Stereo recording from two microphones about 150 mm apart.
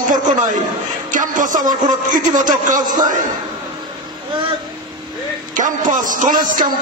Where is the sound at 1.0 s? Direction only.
60° right (ahead or behind).